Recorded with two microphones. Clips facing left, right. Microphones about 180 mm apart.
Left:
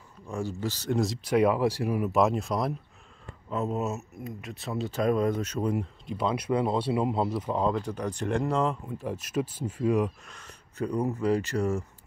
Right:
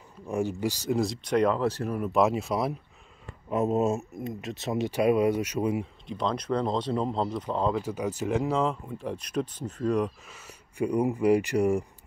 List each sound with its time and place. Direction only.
0.2 s speech: 20° right (ahead or behind)
0.9 s speech: centre (ahead or behind)
3.4 s speech: 15° right (ahead or behind)
4.9 s speech: 10° right (ahead or behind); by 7.7 s 10° left (ahead or behind)
7.7 s speech: 5° right (ahead or behind)